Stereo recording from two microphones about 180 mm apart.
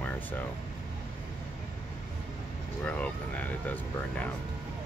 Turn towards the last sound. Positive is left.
turn(degrees=10)  # may be behind; listen again after turning